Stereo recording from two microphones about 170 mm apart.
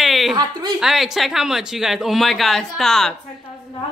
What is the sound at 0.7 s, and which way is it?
Speech, centre (ahead or behind).